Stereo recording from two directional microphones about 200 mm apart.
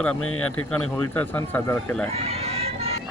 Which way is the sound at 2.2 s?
30° right (ahead or behind).